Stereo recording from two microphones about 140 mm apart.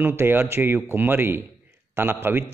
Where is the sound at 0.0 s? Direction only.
15° right (ahead or behind).